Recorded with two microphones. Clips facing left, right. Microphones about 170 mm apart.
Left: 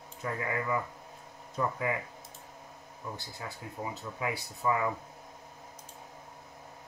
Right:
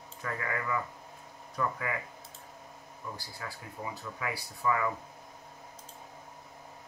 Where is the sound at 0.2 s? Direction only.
20° left (ahead or behind).